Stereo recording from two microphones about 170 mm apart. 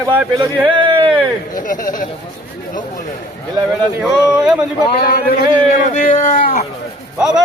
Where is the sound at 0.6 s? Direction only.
30° right (ahead or behind).